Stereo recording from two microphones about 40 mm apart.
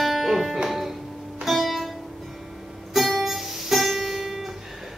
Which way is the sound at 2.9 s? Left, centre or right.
Centre.